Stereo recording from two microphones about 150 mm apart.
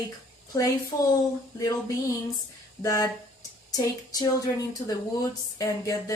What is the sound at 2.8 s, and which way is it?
Speech, 25° left (ahead or behind).